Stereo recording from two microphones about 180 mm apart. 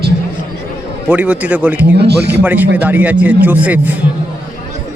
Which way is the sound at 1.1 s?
10° right (ahead or behind).